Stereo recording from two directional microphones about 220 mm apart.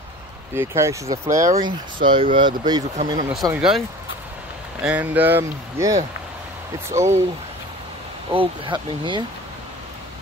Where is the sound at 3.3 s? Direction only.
Centre (ahead or behind).